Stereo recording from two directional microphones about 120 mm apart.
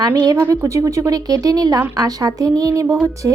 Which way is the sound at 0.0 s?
35° right (ahead or behind).